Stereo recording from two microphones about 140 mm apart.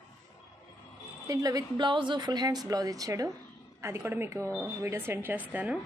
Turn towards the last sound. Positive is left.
turn(degrees=-10)  # may be behind; listen again after turning